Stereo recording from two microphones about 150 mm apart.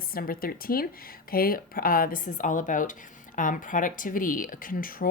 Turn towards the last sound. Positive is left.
turn(degrees=70)  # may be behind; listen again after turning